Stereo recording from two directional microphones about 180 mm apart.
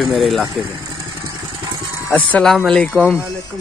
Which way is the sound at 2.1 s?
5° left (ahead or behind).